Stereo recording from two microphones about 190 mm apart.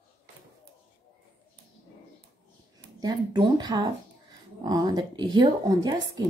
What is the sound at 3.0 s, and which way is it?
Speech, 20° right (ahead or behind).